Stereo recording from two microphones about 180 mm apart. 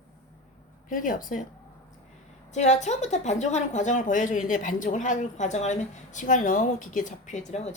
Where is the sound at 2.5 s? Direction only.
40° left (ahead or behind).